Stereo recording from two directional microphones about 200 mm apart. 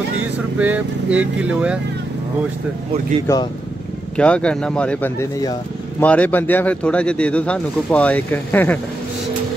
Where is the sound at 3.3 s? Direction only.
15° left (ahead or behind).